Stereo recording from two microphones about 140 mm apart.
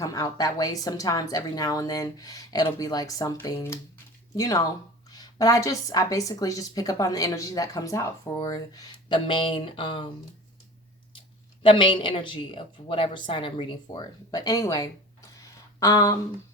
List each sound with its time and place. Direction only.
0.0 s speech: 25° left (ahead or behind)
11.6 s speech: 35° left (ahead or behind)